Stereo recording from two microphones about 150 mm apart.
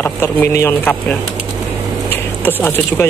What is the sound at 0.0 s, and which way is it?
Speech, 15° left (ahead or behind).